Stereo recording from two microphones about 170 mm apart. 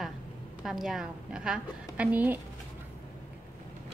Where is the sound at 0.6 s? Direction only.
Centre (ahead or behind).